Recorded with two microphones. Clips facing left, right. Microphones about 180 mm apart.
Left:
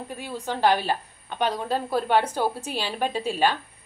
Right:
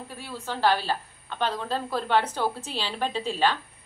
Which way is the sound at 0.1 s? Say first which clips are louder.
Left 4 dB; 20° left (ahead or behind).